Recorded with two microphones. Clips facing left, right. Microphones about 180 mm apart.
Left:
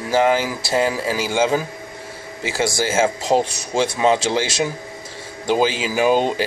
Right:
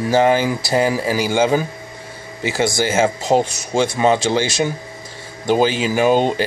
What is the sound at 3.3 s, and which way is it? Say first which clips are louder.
Speech: right 2 dB; 20° right (ahead or behind).